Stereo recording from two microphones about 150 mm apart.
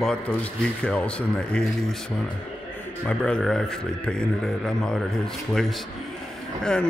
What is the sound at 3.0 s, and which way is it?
Speech, 5° left (ahead or behind).